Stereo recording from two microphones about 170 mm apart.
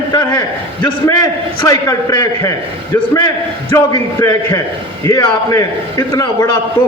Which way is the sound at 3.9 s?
15° left (ahead or behind).